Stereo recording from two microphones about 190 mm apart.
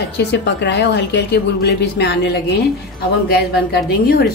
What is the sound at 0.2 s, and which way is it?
A woman's voice, 65° left (ahead or behind).